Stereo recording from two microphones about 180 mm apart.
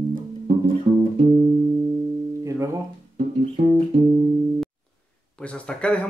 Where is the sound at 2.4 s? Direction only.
15° right (ahead or behind).